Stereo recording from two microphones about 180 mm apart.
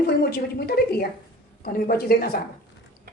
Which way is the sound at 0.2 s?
60° left (ahead or behind).